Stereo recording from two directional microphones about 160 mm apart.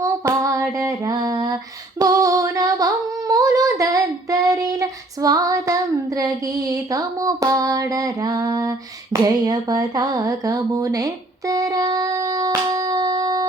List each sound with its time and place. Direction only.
0.0 s female singing: 20° right (ahead or behind)
2.0 s humming: 20° right (ahead or behind)
9.2 s a sound: 25° right (ahead or behind)